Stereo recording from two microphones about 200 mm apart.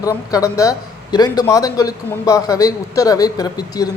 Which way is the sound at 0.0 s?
15° left (ahead or behind).